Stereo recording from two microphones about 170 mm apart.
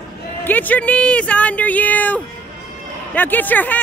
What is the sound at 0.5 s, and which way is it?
Speech, 10° left (ahead or behind).